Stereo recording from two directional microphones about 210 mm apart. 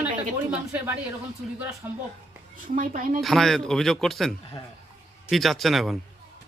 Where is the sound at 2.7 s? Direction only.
40° right (ahead or behind).